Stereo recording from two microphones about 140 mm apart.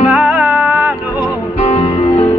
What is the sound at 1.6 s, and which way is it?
Music, 50° left (ahead or behind).